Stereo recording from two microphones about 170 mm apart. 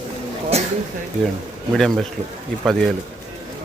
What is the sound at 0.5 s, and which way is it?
Speech, 40° right (ahead or behind).